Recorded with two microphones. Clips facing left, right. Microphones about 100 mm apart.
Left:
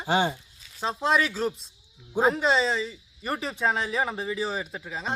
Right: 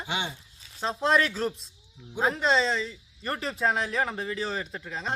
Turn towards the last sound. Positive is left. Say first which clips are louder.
# left 1 dB
turn(degrees=5)  # may be behind; listen again after turning